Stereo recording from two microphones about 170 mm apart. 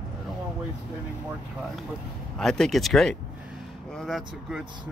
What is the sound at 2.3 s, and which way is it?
Speech, 5° left (ahead or behind).